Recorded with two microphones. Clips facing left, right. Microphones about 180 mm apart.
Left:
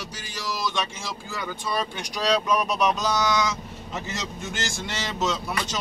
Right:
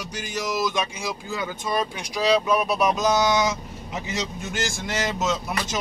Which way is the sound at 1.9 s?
5° right (ahead or behind).